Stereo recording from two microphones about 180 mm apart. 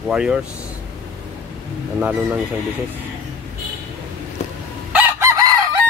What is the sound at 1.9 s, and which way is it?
Speech, 5° right (ahead or behind).